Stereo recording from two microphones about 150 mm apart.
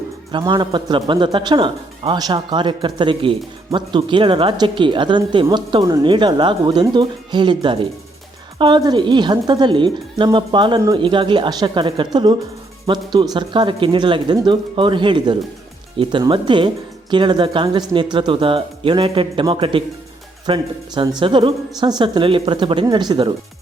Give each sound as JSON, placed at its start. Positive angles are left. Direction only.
{"t": 0.3, "sound": "speech", "side_deg": -30}